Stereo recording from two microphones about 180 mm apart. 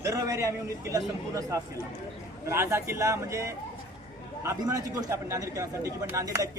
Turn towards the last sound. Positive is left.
turn(degrees=-15)  # may be behind; listen again after turning